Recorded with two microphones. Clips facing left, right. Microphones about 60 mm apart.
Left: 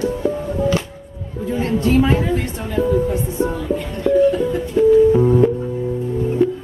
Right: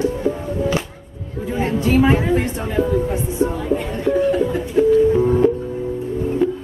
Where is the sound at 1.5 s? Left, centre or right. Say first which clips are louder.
Left 1 dB; centre.